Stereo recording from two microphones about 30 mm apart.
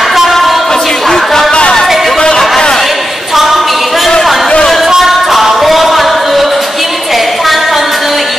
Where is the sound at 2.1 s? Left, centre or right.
Left.